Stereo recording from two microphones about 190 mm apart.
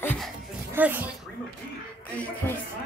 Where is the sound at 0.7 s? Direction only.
10° right (ahead or behind).